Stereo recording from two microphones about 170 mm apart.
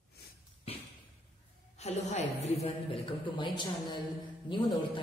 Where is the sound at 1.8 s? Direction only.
40° left (ahead or behind).